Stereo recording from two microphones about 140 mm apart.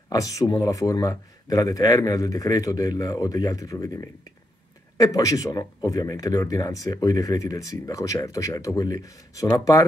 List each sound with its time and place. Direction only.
0.1 s speech: 25° left (ahead or behind)